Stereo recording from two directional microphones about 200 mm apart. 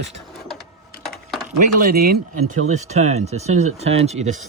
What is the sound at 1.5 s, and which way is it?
Speech, 45° right (ahead or behind).